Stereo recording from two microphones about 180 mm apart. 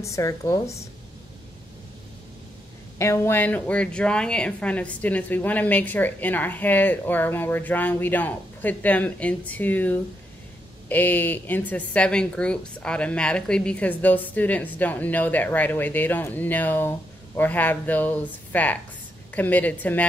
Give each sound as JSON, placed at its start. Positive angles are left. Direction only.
{"t": 0.0, "sound": "a woman's voice", "side_deg": 15}
{"t": 3.0, "sound": "a woman's voice", "side_deg": 15}